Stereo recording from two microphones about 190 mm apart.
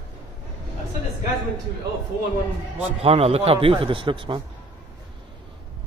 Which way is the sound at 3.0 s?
30° right (ahead or behind).